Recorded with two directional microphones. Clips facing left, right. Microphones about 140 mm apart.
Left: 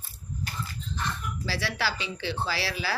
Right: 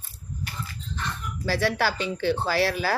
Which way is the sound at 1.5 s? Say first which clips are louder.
Right 7 dB; 50° right (ahead or behind).